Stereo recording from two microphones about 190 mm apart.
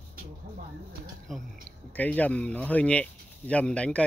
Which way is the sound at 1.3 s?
Centre (ahead or behind).